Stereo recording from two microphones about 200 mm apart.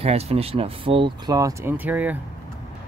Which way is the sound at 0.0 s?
30° right (ahead or behind).